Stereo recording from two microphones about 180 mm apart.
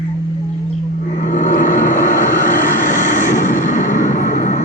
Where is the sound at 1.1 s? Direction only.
45° left (ahead or behind).